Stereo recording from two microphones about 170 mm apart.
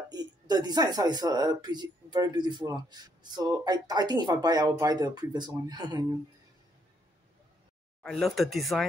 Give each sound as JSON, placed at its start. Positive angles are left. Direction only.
{"t": 0.1, "sound": "speech", "side_deg": -25}
{"t": 8.0, "sound": "speech", "side_deg": 0}